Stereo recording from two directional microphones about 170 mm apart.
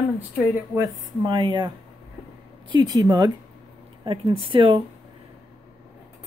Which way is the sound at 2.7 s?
25° right (ahead or behind).